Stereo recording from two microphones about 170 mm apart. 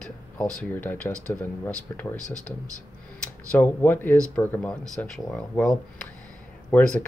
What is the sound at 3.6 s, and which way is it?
Speech, 10° left (ahead or behind).